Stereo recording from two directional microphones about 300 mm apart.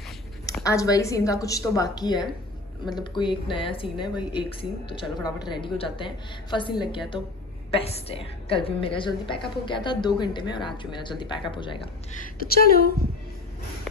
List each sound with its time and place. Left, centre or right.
0.5 s a woman's voice: centre; by 12.9 s left